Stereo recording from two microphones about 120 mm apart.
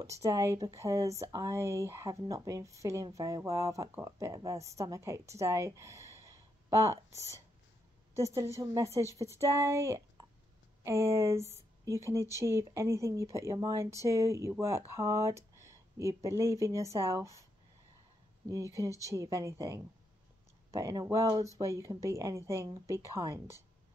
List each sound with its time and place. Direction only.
0.0 s a woman's voice: 25° right (ahead or behind)
18.5 s speech: 25° right (ahead or behind)